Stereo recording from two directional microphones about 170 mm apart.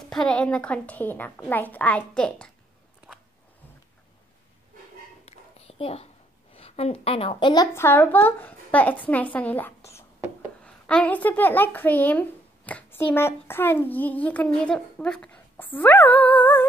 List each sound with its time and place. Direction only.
0.1 s speech: 5° left (ahead or behind)
5.2 s a sound: 35° left (ahead or behind)
6.5 s a woman's voice: 35° left (ahead or behind)
7.7 s speech: 15° left (ahead or behind)